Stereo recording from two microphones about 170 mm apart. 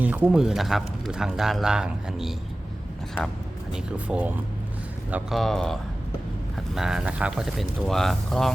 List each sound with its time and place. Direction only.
0.0 s speech: 10° right (ahead or behind)
3.7 s speech: 5° right (ahead or behind)
6.7 s speech: 5° right (ahead or behind)